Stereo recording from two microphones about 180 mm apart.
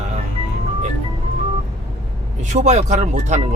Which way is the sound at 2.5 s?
40° right (ahead or behind).